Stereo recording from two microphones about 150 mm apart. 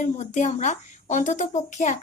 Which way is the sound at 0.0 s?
55° left (ahead or behind).